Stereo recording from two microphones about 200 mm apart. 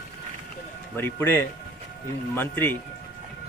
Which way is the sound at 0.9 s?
10° left (ahead or behind).